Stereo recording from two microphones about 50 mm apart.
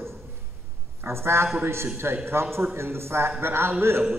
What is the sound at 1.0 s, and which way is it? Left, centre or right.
A man's voice, right.